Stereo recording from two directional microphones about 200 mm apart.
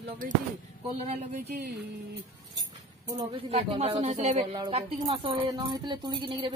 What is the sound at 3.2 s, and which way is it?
A woman's voice, 30° right (ahead or behind).